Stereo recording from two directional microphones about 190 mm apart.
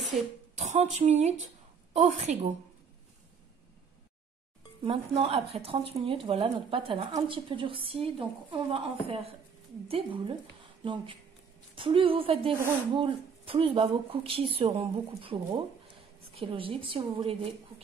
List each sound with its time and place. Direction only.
0.6 s a sound: 35° right (ahead or behind)
0.9 s a woman's voice: 35° right (ahead or behind)
4.8 s speech: 30° right (ahead or behind)